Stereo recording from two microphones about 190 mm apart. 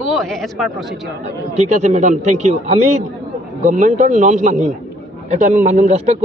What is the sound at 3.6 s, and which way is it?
A man's voice, 40° right (ahead or behind).